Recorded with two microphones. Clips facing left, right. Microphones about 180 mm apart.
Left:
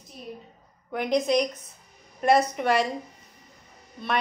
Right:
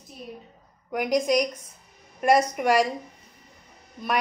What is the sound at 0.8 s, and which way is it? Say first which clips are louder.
A woman's voice: right 1 dB; 10° right (ahead or behind).